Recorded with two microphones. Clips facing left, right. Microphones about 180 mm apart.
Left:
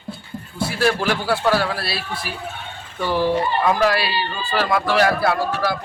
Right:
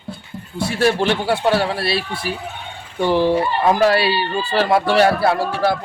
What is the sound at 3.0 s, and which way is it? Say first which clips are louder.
Speech: right 4 dB; 20° right (ahead or behind).